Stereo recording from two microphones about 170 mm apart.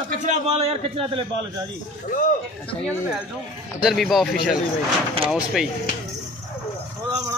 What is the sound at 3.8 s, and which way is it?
Speech, centre (ahead or behind).